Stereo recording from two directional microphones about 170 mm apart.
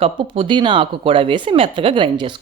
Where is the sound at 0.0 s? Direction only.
30° right (ahead or behind).